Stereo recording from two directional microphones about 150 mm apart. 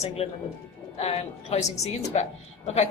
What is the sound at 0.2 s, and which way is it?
A woman's voice, 40° left (ahead or behind).